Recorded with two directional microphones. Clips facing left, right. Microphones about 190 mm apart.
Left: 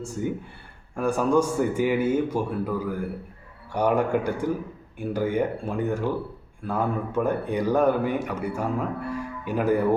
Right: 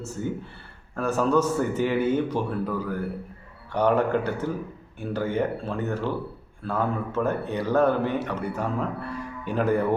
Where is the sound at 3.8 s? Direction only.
10° left (ahead or behind).